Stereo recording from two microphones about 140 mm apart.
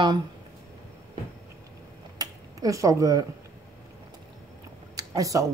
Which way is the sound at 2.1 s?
25° right (ahead or behind).